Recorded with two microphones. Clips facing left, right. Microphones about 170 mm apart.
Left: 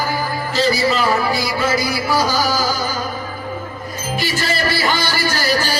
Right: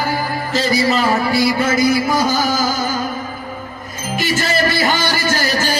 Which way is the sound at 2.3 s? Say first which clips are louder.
Right 1 dB; 50° right (ahead or behind).